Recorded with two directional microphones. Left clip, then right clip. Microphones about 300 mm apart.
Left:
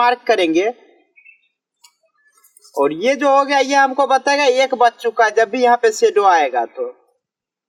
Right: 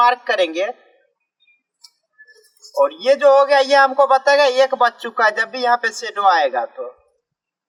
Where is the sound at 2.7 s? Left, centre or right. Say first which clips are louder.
Right 1 dB; centre.